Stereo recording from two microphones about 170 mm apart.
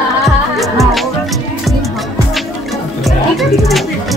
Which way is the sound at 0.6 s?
Centre (ahead or behind).